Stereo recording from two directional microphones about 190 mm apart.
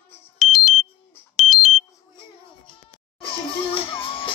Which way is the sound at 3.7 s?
25° left (ahead or behind).